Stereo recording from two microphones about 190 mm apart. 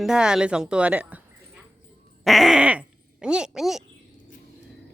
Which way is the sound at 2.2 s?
Centre (ahead or behind).